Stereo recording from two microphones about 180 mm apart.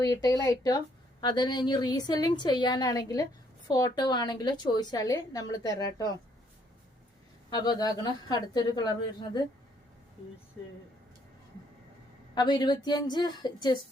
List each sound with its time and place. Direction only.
0.0 s a woman's voice: 20° left (ahead or behind)
7.5 s a woman's voice: 20° left (ahead or behind)
12.3 s a woman's voice: 25° left (ahead or behind)